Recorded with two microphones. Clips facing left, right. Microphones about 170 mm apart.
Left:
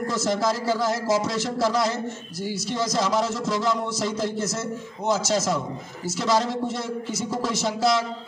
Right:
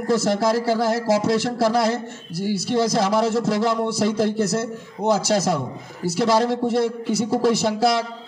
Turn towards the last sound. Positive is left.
turn(degrees=-60)  # may be behind; listen again after turning